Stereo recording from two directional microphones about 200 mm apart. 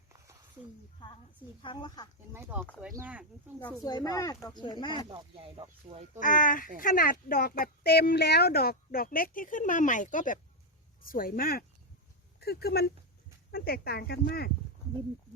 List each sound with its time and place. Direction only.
1.6 s speech: 25° left (ahead or behind)
2.3 s speech: 10° right (ahead or behind)
3.8 s speech: 20° left (ahead or behind)
5.0 s speech: 25° right (ahead or behind)
6.1 s speech: 40° left (ahead or behind)